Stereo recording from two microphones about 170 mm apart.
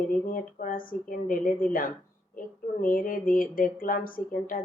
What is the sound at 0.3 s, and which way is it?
A woman's voice, 55° left (ahead or behind).